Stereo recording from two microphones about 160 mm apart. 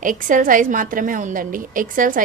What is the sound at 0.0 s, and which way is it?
A woman's voice, 55° right (ahead or behind).